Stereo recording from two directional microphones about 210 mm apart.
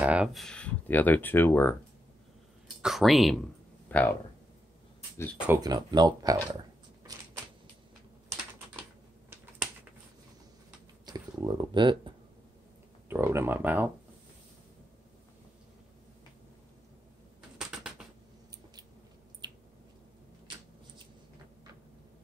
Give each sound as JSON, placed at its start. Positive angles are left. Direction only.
{"t": 0.0, "sound": "speech", "side_deg": -5}
{"t": 2.8, "sound": "speech", "side_deg": 0}
{"t": 5.5, "sound": "speech", "side_deg": -20}
{"t": 11.1, "sound": "speech", "side_deg": -20}
{"t": 13.1, "sound": "speech", "side_deg": -10}
{"t": 17.6, "sound": "typing", "side_deg": -5}
{"t": 19.4, "sound": "squish", "side_deg": -20}